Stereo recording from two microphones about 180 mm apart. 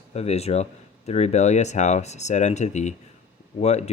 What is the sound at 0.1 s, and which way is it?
Speech, 35° left (ahead or behind).